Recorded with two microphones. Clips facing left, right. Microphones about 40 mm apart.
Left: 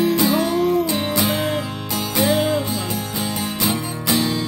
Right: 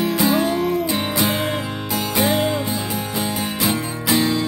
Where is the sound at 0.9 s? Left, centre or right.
Centre.